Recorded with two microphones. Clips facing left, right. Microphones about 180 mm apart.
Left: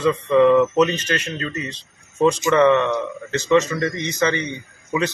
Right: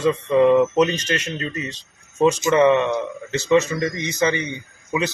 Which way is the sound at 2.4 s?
20° right (ahead or behind).